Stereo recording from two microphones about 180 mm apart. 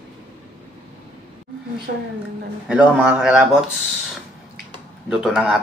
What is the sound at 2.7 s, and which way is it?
Speech, 5° right (ahead or behind).